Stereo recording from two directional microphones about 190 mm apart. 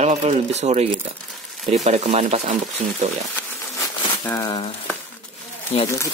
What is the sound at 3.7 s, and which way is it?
Crumpling, 20° left (ahead or behind).